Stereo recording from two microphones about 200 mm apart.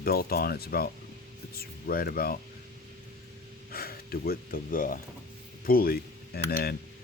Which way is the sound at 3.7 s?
50° left (ahead or behind).